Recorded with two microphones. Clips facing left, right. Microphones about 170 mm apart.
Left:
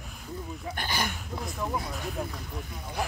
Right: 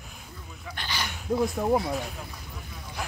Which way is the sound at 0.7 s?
50° left (ahead or behind).